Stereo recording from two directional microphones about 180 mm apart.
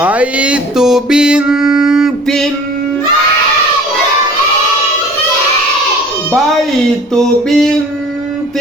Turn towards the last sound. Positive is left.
turn(degrees=5)  # may be behind; listen again after turning